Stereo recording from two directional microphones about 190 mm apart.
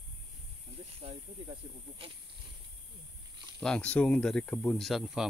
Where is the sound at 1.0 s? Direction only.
35° right (ahead or behind).